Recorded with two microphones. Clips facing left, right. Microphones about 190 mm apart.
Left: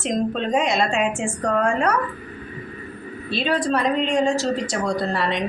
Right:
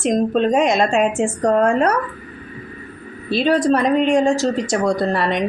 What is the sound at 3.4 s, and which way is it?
A woman's voice, 40° right (ahead or behind).